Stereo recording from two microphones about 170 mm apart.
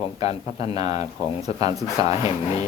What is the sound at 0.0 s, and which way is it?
Speech, 40° left (ahead or behind).